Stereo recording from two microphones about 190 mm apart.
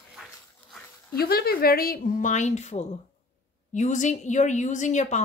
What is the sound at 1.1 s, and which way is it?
A woman's voice, 55° left (ahead or behind).